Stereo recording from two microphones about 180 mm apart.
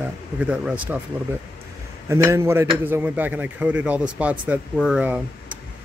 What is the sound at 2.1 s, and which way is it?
Speech, 15° right (ahead or behind).